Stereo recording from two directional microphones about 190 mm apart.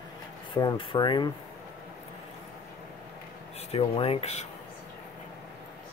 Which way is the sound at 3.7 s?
30° left (ahead or behind).